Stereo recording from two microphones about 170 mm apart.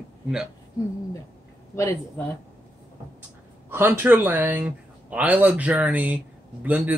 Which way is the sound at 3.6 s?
15° right (ahead or behind).